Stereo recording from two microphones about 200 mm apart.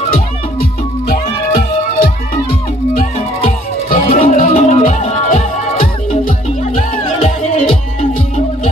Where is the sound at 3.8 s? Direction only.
40° left (ahead or behind).